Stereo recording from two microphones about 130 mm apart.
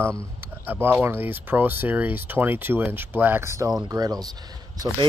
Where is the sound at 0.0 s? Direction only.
10° left (ahead or behind).